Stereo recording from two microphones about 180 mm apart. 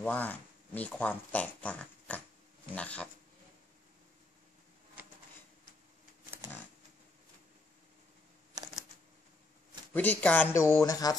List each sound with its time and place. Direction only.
0.0 s speech: 10° left (ahead or behind)
8.6 s shuffling cards: 20° right (ahead or behind)
9.9 s speech: 10° left (ahead or behind)